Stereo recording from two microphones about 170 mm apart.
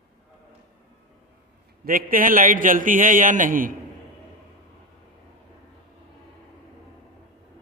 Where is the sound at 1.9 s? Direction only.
55° right (ahead or behind).